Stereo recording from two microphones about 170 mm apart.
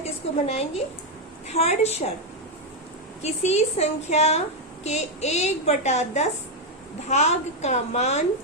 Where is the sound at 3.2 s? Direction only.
40° left (ahead or behind).